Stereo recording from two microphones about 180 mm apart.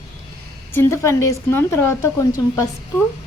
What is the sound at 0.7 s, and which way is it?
Speech, 15° left (ahead or behind).